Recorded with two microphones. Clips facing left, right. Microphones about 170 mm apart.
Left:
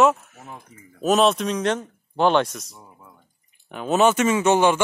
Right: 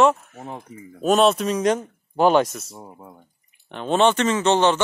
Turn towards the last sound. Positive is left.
turn(degrees=10)  # may be behind; listen again after turning